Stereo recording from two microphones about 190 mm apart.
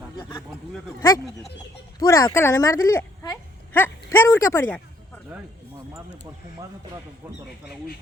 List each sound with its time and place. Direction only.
2.0 s speech: 20° left (ahead or behind)